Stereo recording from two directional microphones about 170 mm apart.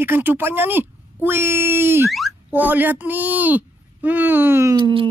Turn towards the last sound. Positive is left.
turn(degrees=-30)  # may be behind; listen again after turning